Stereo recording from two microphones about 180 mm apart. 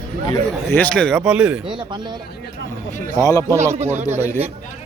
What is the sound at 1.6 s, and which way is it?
Speech, 25° right (ahead or behind).